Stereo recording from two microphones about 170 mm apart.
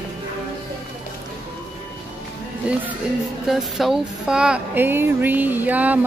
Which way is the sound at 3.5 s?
Centre (ahead or behind).